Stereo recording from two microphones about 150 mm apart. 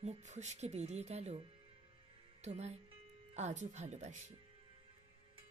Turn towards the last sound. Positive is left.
turn(degrees=-50)  # may be behind; listen again after turning